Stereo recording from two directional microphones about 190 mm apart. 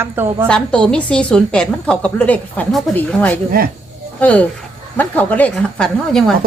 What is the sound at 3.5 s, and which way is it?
Speech, 50° right (ahead or behind).